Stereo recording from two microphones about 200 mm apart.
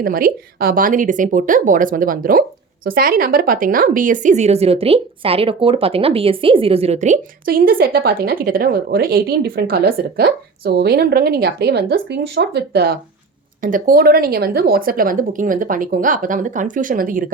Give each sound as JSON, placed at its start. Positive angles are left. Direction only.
{"t": 0.0, "sound": "a woman's voice", "side_deg": -45}
{"t": 13.6, "sound": "a woman's voice", "side_deg": -40}